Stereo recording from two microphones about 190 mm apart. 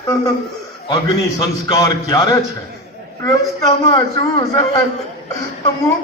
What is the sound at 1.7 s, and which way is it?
A man's voice, 20° left (ahead or behind).